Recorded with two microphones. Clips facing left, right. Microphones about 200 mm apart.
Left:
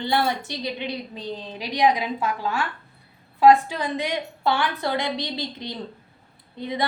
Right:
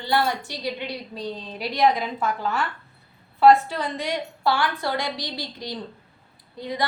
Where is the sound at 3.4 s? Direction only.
15° left (ahead or behind).